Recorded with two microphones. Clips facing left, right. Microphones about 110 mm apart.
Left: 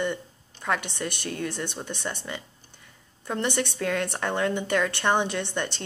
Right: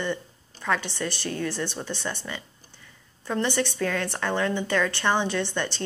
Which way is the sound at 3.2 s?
20° left (ahead or behind).